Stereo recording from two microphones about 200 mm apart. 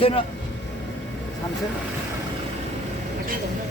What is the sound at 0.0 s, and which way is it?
Speech, 25° left (ahead or behind).